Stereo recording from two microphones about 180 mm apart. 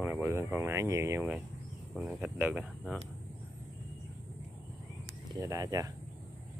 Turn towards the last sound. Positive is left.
turn(degrees=-20)  # may be behind; listen again after turning